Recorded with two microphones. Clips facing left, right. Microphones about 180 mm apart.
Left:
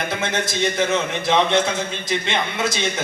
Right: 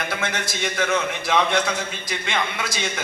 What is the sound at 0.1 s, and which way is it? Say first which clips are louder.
A man's voice: left 3 dB; 20° left (ahead or behind).